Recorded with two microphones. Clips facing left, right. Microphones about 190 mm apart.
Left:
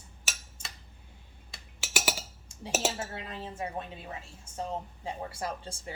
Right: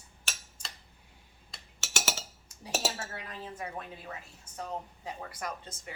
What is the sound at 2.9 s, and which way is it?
Speech, 25° left (ahead or behind).